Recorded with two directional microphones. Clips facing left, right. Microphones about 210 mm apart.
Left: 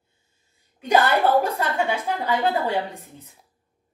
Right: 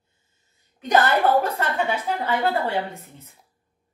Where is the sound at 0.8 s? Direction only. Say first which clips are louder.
Even; 10° left (ahead or behind).